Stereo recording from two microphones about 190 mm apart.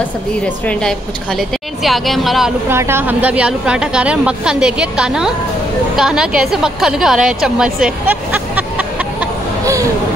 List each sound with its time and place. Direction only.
1.8 s a woman's voice: centre (ahead or behind)
2.7 s a woman's voice: 15° right (ahead or behind)